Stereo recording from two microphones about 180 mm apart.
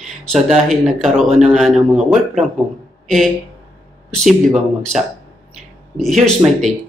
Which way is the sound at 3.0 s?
Centre (ahead or behind).